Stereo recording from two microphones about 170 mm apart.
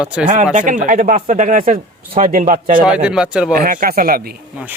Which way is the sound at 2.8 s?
5° right (ahead or behind).